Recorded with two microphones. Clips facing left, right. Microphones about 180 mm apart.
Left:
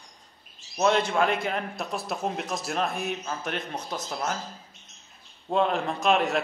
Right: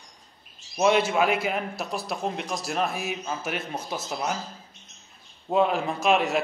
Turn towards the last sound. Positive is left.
turn(degrees=0)  # may be behind; listen again after turning